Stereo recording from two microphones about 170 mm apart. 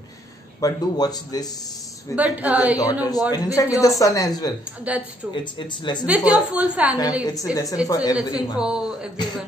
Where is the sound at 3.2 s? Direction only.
20° left (ahead or behind).